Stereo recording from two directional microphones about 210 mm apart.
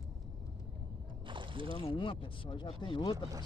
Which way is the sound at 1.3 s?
25° right (ahead or behind).